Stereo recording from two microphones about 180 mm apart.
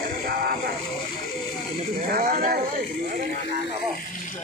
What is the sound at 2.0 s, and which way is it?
Speech, 55° right (ahead or behind).